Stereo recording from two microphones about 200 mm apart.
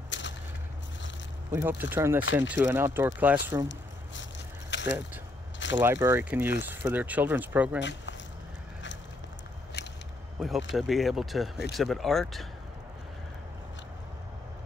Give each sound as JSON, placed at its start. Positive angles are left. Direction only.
{"t": 0.1, "sound": "a sound", "side_deg": 65}
{"t": 1.5, "sound": "speech", "side_deg": -10}
{"t": 3.6, "sound": "squish", "side_deg": 65}
{"t": 5.8, "sound": "speech", "side_deg": -10}
{"t": 7.8, "sound": "speech", "side_deg": 65}
{"t": 9.8, "sound": "a sound", "side_deg": 60}
{"t": 10.4, "sound": "speech", "side_deg": 0}